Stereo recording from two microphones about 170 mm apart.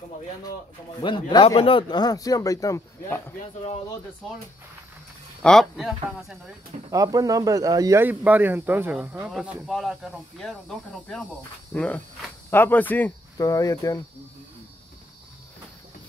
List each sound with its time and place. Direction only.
1.0 s speech: 30° left (ahead or behind)
5.4 s speech: centre (ahead or behind)
6.9 s speech: 20° right (ahead or behind); by 13.1 s 10° left (ahead or behind)
13.4 s speech: 20° left (ahead or behind)